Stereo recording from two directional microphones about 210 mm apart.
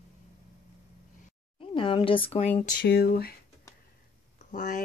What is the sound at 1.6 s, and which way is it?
Speech, 25° left (ahead or behind).